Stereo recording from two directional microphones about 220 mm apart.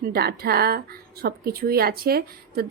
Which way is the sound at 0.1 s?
45° right (ahead or behind).